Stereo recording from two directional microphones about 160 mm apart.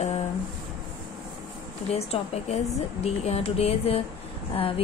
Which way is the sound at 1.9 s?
40° left (ahead or behind).